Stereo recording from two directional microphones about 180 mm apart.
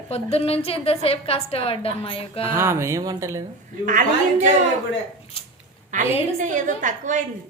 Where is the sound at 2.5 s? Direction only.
15° right (ahead or behind).